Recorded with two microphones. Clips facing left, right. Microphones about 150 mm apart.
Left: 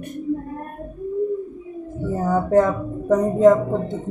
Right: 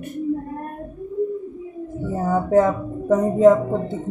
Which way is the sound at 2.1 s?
5° right (ahead or behind).